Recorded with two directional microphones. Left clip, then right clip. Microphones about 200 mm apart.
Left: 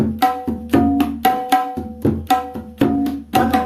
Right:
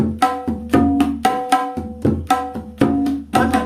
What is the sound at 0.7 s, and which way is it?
Music, 5° left (ahead or behind).